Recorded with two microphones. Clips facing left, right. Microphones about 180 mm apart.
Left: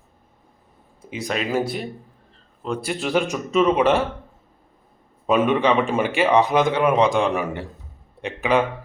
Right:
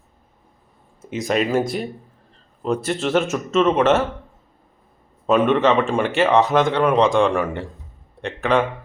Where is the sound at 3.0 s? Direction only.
Centre (ahead or behind).